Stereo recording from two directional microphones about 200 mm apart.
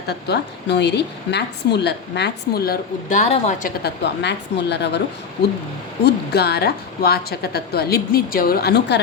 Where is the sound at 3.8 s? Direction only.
60° left (ahead or behind).